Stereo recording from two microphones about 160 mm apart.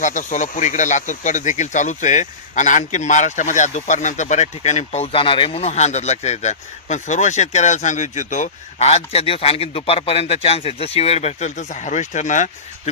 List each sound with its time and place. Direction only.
0.0 s speech: 50° left (ahead or behind)